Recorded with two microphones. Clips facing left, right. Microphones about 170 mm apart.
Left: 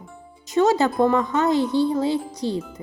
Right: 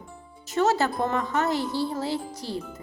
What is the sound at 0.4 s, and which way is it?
A woman's voice, 15° left (ahead or behind).